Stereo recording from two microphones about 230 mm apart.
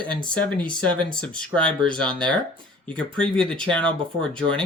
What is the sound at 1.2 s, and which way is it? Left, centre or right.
Speech, centre.